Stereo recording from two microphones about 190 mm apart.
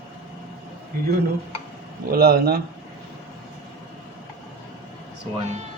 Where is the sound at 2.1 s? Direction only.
55° right (ahead or behind).